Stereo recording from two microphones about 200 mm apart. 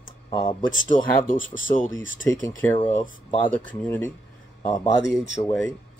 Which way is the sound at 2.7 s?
25° left (ahead or behind).